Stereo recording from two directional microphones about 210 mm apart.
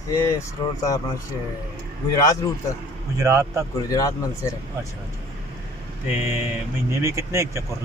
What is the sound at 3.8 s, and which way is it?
Speech, 15° left (ahead or behind).